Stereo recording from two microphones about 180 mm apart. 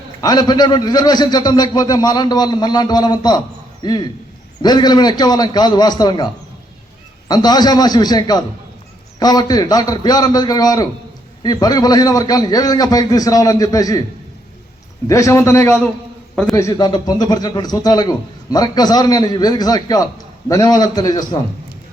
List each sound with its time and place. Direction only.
0.2 s a man's voice: 20° left (ahead or behind)
7.3 s a man's voice: 20° left (ahead or behind)
15.0 s a man's voice: 15° left (ahead or behind)
16.3 s a man's voice: 5° left (ahead or behind)
16.6 s a man's voice: 20° left (ahead or behind)